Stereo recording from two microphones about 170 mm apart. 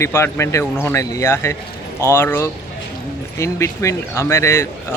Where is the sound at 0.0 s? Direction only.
15° left (ahead or behind).